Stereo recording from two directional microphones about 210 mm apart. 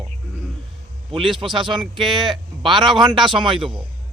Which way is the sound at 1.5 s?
20° right (ahead or behind).